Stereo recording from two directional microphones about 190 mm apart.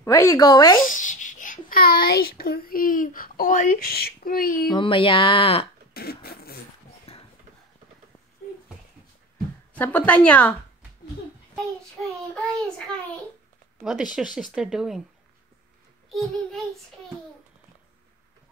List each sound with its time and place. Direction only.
0.0 s speech: 15° left (ahead or behind)
0.8 s a child's voice: 45° left (ahead or behind)
4.6 s speech: 25° left (ahead or behind)
5.9 s a child's voice: 55° left (ahead or behind)
7.1 s a sound: 35° left (ahead or behind)
9.8 s a woman's voice: 10° left (ahead or behind)
11.5 s a child's voice: 5° left (ahead or behind)
16.1 s a child's voice: centre (ahead or behind)